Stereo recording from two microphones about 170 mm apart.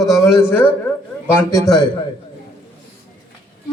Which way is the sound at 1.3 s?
15° left (ahead or behind).